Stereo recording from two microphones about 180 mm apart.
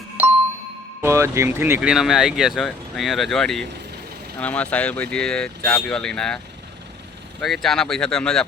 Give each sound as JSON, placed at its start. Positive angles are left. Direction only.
{"t": 1.0, "sound": "speech", "side_deg": -15}
{"t": 7.4, "sound": "speech", "side_deg": 0}